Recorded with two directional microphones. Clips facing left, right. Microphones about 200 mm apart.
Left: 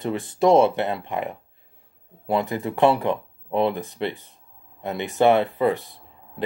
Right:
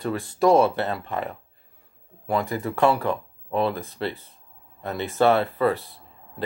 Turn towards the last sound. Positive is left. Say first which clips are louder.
# left 1 dB
turn(degrees=15)  # may be behind; listen again after turning